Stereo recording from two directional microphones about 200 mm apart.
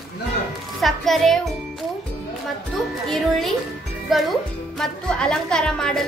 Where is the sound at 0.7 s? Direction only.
Centre (ahead or behind).